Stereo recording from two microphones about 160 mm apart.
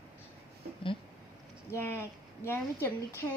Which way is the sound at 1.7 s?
15° left (ahead or behind).